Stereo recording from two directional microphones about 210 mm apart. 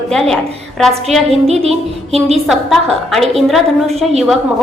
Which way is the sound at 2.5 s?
Centre (ahead or behind).